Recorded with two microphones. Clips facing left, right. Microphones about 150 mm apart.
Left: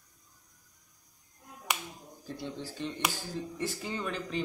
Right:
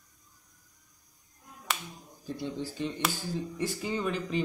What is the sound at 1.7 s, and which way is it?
Finger snapping, 15° left (ahead or behind).